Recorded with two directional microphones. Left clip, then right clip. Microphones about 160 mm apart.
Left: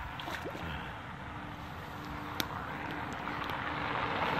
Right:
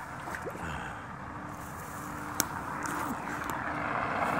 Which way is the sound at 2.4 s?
60° right (ahead or behind).